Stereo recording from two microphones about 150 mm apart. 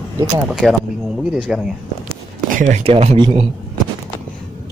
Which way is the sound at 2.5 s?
60° right (ahead or behind).